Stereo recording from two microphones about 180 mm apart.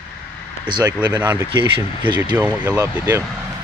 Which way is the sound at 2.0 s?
25° right (ahead or behind).